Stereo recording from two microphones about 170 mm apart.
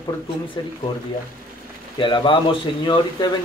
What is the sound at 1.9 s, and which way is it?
Speech, 30° left (ahead or behind).